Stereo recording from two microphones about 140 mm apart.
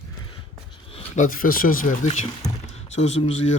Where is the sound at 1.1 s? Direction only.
70° left (ahead or behind).